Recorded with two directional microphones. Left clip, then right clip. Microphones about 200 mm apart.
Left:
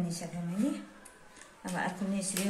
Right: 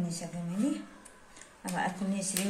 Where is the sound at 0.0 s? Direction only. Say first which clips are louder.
Even; centre (ahead or behind).